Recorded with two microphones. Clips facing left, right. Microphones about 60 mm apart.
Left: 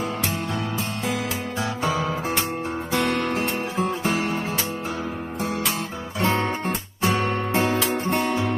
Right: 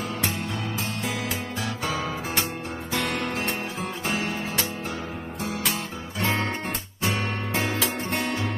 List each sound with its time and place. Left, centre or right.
1.9 s guitar: centre
2.9 s music: left
4.2 s music: centre
6.2 s music: left